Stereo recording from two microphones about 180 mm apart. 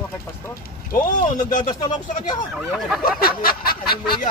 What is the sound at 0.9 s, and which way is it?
Speech, 45° left (ahead or behind).